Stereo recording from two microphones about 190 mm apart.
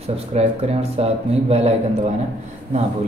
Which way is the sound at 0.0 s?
35° right (ahead or behind).